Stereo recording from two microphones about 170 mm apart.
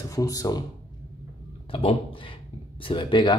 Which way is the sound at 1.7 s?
35° left (ahead or behind).